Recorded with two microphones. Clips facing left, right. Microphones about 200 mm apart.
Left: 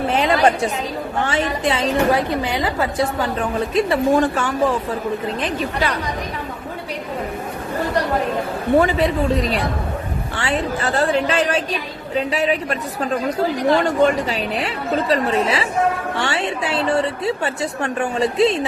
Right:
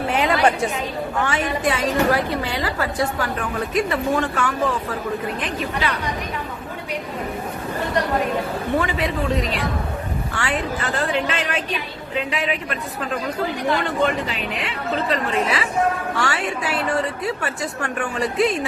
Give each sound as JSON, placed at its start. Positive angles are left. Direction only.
{"t": 0.1, "sound": "chatter", "side_deg": 30}
{"t": 1.2, "sound": "a woman's voice", "side_deg": 30}
{"t": 2.3, "sound": "a woman's voice", "side_deg": 15}
{"t": 8.8, "sound": "a woman's voice", "side_deg": 35}
{"t": 16.1, "sound": "a woman's voice", "side_deg": 25}